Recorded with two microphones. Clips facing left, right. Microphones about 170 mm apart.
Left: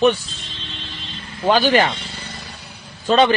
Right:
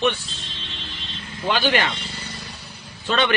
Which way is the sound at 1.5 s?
40° left (ahead or behind).